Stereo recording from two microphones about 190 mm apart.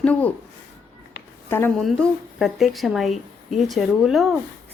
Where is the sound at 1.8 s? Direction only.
Centre (ahead or behind).